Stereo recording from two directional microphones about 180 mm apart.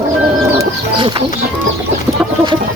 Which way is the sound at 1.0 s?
30° right (ahead or behind).